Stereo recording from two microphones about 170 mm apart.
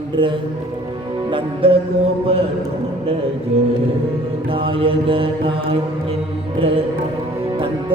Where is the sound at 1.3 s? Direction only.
30° right (ahead or behind).